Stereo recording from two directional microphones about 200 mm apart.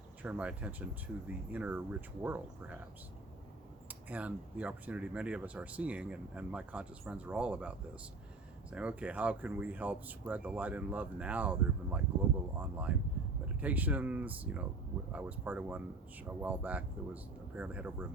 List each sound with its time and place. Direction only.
0.2 s speech: 5° right (ahead or behind)
3.8 s speech: 5° right (ahead or behind)
8.7 s speech: 5° right (ahead or behind)